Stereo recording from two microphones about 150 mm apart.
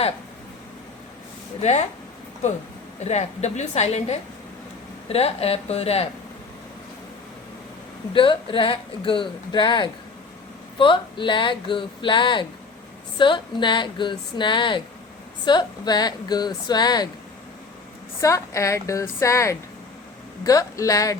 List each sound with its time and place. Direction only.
1.6 s a woman's voice: 50° left (ahead or behind)
3.0 s a woman's voice: 45° left (ahead or behind)
8.1 s speech: 35° left (ahead or behind)
18.2 s speech: 20° left (ahead or behind)